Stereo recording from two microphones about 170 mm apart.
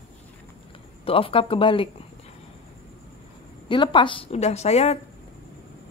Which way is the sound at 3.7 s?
30° left (ahead or behind).